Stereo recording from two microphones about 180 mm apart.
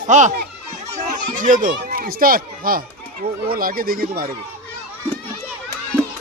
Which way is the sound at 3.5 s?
55° right (ahead or behind).